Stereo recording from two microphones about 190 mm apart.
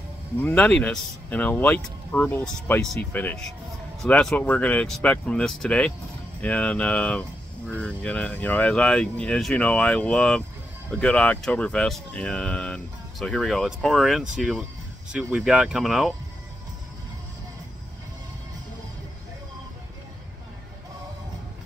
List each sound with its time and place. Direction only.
0.4 s speech: 10° left (ahead or behind)